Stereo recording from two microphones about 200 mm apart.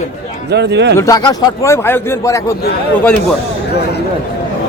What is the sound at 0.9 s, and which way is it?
A man's voice, 15° left (ahead or behind).